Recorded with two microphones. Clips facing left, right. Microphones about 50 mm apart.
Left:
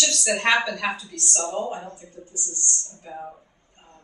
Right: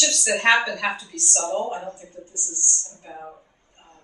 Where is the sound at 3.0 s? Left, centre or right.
Centre.